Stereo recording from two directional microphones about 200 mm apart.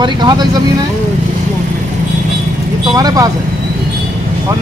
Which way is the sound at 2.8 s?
20° right (ahead or behind).